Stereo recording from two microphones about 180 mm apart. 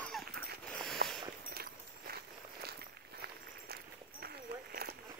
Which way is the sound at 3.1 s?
60° right (ahead or behind).